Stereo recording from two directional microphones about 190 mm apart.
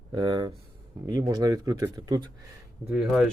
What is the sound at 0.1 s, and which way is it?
Speech, 25° right (ahead or behind).